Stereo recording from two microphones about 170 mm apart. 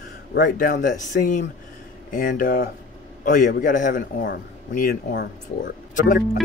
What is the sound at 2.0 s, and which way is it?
A man's voice, 55° left (ahead or behind).